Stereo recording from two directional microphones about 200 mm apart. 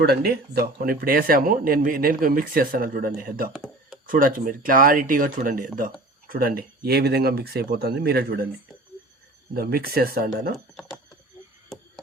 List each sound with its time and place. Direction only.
0.0 s speech: 50° right (ahead or behind)
9.6 s speech: 50° right (ahead or behind)